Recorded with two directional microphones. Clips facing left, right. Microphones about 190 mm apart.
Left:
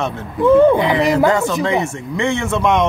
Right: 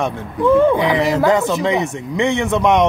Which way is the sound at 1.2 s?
20° right (ahead or behind).